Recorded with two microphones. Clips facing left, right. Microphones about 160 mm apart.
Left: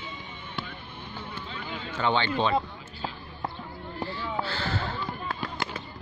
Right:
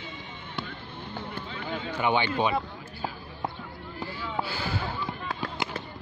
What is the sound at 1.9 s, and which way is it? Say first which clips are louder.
Speech: even; 15° right (ahead or behind).